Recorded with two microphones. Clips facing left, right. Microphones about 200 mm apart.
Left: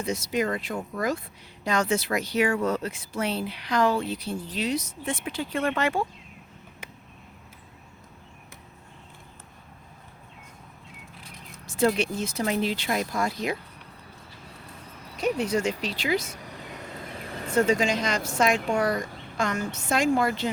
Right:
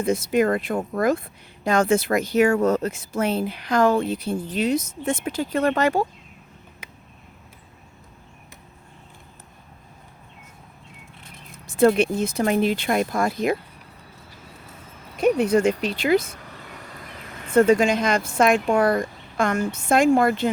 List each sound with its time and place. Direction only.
0.0 s speech: 55° right (ahead or behind)
11.5 s speech: 55° right (ahead or behind)
15.2 s speech: 55° right (ahead or behind)
17.5 s speech: 55° right (ahead or behind)